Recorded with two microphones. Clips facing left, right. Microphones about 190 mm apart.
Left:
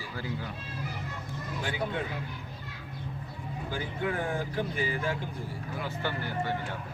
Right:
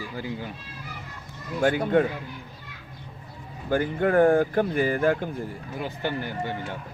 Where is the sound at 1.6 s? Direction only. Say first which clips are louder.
Right 13 dB; 50° right (ahead or behind).